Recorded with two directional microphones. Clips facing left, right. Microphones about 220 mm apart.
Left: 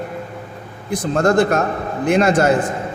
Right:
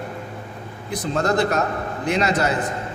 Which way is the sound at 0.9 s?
50° left (ahead or behind).